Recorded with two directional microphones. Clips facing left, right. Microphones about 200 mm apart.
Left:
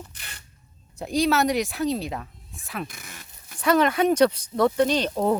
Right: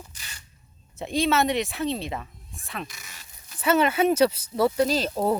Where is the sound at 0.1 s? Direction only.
60° left (ahead or behind).